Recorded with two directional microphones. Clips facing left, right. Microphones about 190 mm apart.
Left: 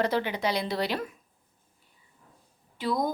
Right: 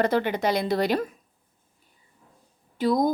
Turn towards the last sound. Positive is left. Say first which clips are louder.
# right 6 dB
turn(degrees=-45)  # may be behind; listen again after turning